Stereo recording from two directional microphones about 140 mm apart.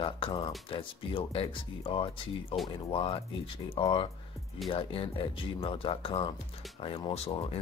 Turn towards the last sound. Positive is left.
turn(degrees=45)  # may be behind; listen again after turning